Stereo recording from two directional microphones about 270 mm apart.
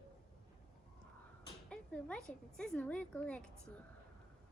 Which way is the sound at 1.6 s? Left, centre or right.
Centre.